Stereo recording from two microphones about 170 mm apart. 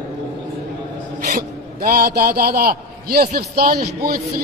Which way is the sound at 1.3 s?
55° right (ahead or behind).